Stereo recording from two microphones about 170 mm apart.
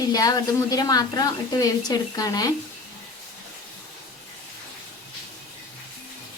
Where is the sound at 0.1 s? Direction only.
20° left (ahead or behind).